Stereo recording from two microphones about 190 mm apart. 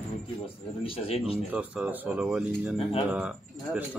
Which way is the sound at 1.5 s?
5° right (ahead or behind).